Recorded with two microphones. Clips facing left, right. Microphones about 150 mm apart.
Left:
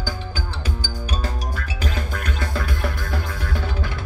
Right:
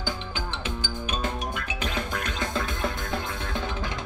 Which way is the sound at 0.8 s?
35° left (ahead or behind).